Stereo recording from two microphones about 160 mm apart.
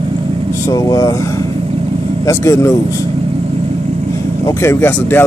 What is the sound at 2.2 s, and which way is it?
Speech, 20° left (ahead or behind).